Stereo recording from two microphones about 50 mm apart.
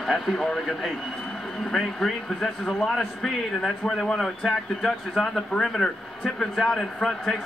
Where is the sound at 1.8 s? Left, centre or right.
Centre.